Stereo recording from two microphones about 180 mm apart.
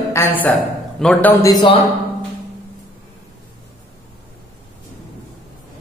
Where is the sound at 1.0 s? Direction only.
5° left (ahead or behind).